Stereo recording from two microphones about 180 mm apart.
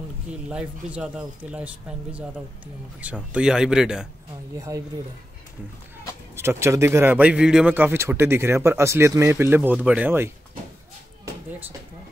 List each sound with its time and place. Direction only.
0.3 s a man's voice: 5° right (ahead or behind)
3.0 s speech: 5° right (ahead or behind)
4.6 s a man's voice: 15° right (ahead or behind)
6.3 s a man's voice: 15° right (ahead or behind)